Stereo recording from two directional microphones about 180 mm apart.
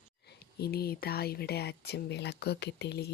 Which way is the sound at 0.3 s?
60° left (ahead or behind).